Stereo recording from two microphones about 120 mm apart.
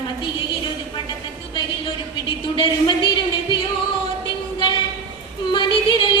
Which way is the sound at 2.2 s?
45° left (ahead or behind).